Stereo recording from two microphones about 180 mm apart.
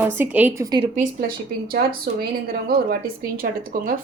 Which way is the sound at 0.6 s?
25° right (ahead or behind).